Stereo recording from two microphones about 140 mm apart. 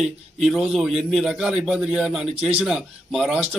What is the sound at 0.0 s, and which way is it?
A man's voice, 5° right (ahead or behind).